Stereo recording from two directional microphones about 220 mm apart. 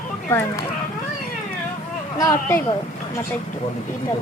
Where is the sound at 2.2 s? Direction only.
15° left (ahead or behind).